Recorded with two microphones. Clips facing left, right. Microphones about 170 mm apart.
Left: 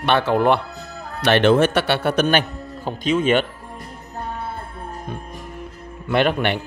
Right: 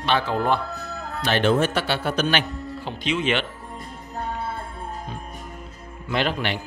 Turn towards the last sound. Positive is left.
turn(degrees=55)  # may be behind; listen again after turning